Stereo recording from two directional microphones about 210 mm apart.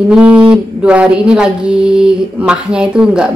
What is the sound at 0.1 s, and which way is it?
Speech, 5° right (ahead or behind).